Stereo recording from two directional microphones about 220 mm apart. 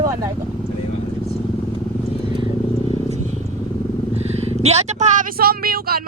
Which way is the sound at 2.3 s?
25° right (ahead or behind).